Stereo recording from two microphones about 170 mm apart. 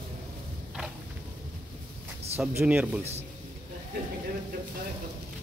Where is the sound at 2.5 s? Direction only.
5° right (ahead or behind).